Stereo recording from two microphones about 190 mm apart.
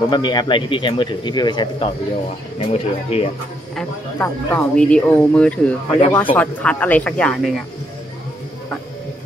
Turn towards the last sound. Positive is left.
turn(degrees=5)  # may be behind; listen again after turning